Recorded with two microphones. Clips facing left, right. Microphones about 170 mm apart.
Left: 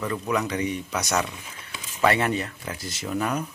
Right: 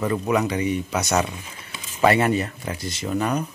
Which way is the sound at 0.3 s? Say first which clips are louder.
Right 3 dB; 5° right (ahead or behind).